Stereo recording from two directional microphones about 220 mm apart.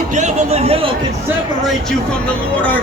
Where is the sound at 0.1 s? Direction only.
30° right (ahead or behind).